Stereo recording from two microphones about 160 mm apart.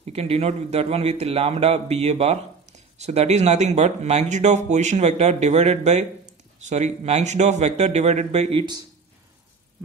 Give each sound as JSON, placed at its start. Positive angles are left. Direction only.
{"t": 0.0, "sound": "a man's voice", "side_deg": -40}